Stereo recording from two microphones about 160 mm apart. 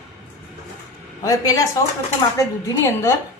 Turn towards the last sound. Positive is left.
turn(degrees=20)  # may be behind; listen again after turning